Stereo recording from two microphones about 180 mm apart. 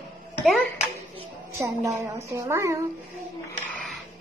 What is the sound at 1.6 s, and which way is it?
A woman's voice, 15° right (ahead or behind).